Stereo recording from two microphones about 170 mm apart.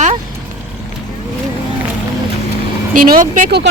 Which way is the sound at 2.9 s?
55° right (ahead or behind).